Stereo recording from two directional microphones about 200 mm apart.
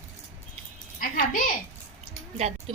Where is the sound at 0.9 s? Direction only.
45° left (ahead or behind).